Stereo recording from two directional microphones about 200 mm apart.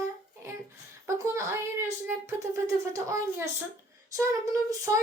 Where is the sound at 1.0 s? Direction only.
15° right (ahead or behind).